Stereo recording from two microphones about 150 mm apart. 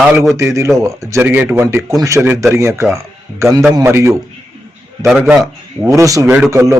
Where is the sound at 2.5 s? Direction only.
20° right (ahead or behind).